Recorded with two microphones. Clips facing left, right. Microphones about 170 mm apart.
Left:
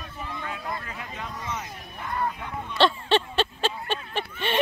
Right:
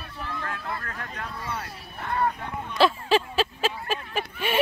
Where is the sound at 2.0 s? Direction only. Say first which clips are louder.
Right 3 dB; 60° right (ahead or behind).